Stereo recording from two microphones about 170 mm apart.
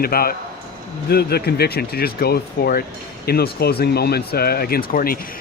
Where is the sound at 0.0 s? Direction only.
60° left (ahead or behind).